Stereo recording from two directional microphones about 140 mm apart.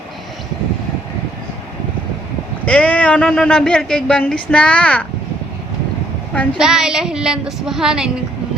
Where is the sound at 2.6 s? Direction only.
10° left (ahead or behind).